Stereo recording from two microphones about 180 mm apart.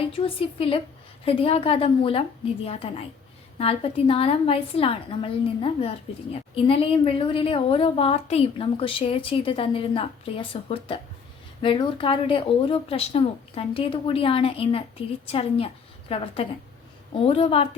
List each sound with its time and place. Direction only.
0.1 s a woman's voice: 30° left (ahead or behind)